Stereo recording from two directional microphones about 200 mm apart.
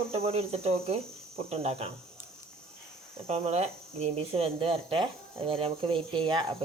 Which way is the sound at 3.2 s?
30° right (ahead or behind).